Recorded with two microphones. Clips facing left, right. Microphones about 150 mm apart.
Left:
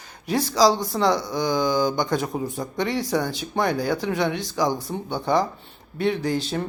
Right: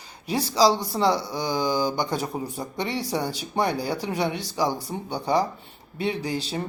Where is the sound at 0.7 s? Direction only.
35° right (ahead or behind).